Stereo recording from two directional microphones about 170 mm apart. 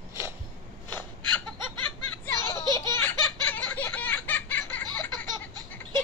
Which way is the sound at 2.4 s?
25° right (ahead or behind).